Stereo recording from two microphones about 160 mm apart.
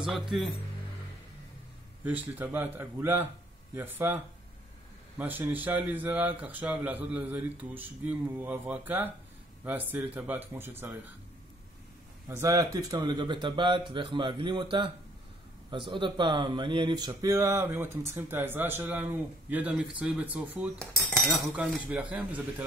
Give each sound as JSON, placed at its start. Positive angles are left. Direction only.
{"t": 0.0, "sound": "cutlery", "side_deg": 0}
{"t": 2.0, "sound": "speech", "side_deg": -10}
{"t": 12.3, "sound": "speech", "side_deg": -20}
{"t": 20.8, "sound": "cutlery", "side_deg": 5}
{"t": 21.5, "sound": "speech", "side_deg": -10}